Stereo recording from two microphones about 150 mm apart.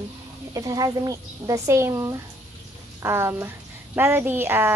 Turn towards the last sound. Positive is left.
turn(degrees=-15)  # may be behind; listen again after turning